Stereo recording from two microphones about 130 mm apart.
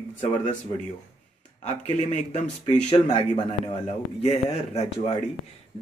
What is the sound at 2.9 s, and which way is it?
Speech, 45° left (ahead or behind).